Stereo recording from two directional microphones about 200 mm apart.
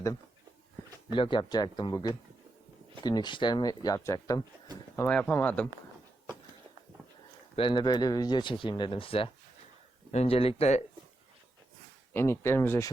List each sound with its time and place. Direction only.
1.1 s speech: 25° left (ahead or behind)
4.9 s speech: 5° left (ahead or behind)
7.5 s speech: 25° left (ahead or behind)
12.1 s speech: 15° left (ahead or behind)